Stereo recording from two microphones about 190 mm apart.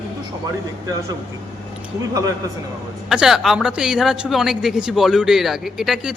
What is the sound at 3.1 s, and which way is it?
A man's voice, 5° right (ahead or behind).